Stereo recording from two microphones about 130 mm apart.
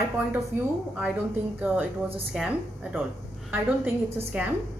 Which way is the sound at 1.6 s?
10° right (ahead or behind).